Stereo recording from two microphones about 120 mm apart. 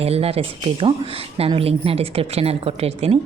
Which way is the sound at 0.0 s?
55° right (ahead or behind).